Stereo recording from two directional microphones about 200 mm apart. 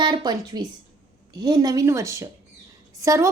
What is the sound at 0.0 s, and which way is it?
A woman's voice, 20° right (ahead or behind).